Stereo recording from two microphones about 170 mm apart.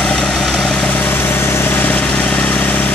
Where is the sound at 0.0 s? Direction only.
5° left (ahead or behind).